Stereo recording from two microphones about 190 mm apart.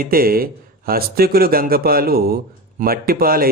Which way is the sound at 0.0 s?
50° right (ahead or behind).